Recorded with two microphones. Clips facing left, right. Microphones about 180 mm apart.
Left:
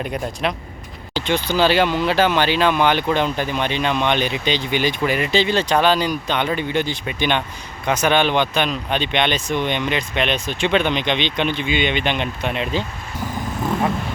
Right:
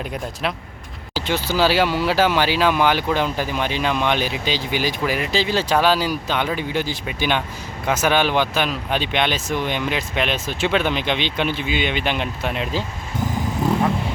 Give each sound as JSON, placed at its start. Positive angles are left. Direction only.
{"t": 0.0, "sound": "speech", "side_deg": 0}